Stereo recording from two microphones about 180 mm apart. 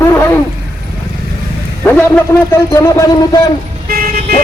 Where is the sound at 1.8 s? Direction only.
10° left (ahead or behind).